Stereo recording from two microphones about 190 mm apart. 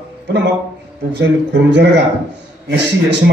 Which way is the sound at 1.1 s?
65° right (ahead or behind).